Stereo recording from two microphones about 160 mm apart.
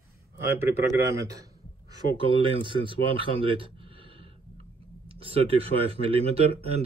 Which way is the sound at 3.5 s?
35° right (ahead or behind).